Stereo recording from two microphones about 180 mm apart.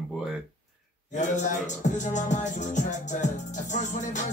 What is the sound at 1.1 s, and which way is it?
Music, 40° left (ahead or behind).